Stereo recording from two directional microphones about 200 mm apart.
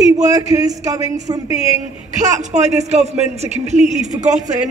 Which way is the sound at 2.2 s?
35° right (ahead or behind).